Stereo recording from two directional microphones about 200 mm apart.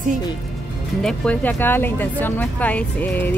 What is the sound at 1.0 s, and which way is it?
Speech, 5° left (ahead or behind).